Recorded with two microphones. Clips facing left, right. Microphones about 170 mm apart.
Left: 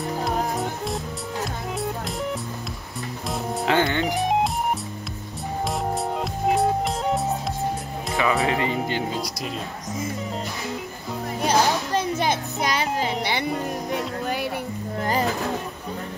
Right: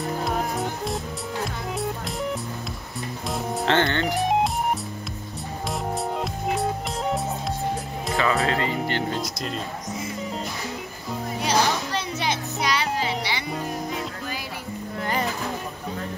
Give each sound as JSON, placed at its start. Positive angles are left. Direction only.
{"t": 0.2, "sound": "music", "side_deg": 0}
{"t": 3.3, "sound": "music", "side_deg": 5}
{"t": 6.5, "sound": "music", "side_deg": 0}
{"t": 8.2, "sound": "music", "side_deg": 15}
{"t": 11.4, "sound": "music", "side_deg": 50}
{"t": 15.0, "sound": "music", "side_deg": 35}